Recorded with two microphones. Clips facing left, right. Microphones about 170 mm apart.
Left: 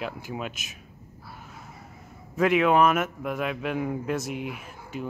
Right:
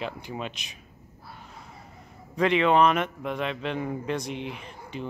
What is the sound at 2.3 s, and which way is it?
A man's voice, 5° left (ahead or behind).